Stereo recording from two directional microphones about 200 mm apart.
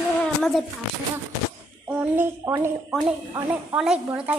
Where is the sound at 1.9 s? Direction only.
10° right (ahead or behind).